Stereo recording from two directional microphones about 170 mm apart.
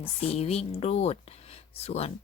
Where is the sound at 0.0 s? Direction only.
35° left (ahead or behind).